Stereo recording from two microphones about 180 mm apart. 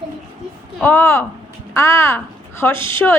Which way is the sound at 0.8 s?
15° left (ahead or behind).